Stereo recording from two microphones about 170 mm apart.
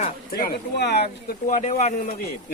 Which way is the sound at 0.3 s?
60° left (ahead or behind).